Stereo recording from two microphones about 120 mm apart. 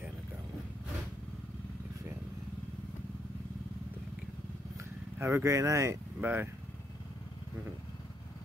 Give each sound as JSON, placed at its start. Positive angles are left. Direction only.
{"t": 5.2, "sound": "speech", "side_deg": -25}